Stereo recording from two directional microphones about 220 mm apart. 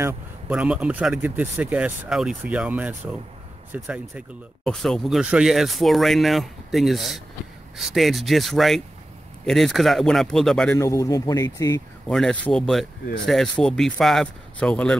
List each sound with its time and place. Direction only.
0.0 s speech: 5° right (ahead or behind)
10.8 s speech: 15° left (ahead or behind)
12.1 s speech: centre (ahead or behind)